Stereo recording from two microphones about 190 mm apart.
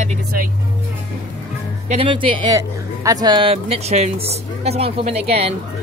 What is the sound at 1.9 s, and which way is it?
Speech, 30° right (ahead or behind).